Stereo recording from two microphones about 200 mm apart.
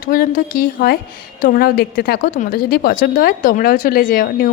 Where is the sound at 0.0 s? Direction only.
45° left (ahead or behind).